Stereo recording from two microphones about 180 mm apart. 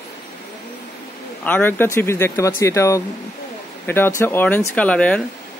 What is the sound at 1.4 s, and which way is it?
A man's voice, 10° left (ahead or behind).